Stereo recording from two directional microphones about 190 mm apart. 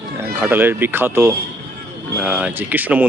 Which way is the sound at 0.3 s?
10° right (ahead or behind).